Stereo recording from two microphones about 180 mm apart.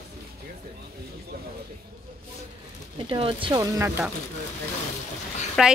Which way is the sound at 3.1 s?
30° right (ahead or behind).